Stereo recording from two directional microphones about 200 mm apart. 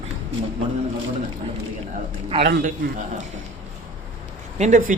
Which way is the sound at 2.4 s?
50° right (ahead or behind).